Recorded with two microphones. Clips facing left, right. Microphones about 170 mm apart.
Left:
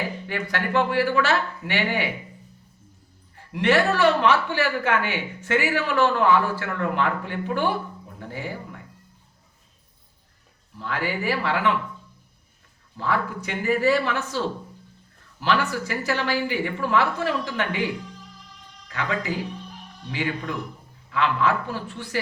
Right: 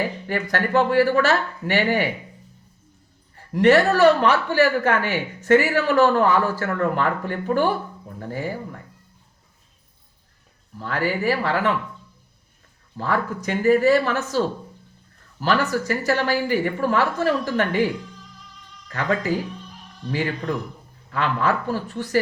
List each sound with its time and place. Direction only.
0.3 s speech: 40° right (ahead or behind)
3.5 s speech: 40° right (ahead or behind)
10.8 s speech: 40° right (ahead or behind)
13.0 s speech: 40° right (ahead or behind)
18.9 s speech: 40° right (ahead or behind)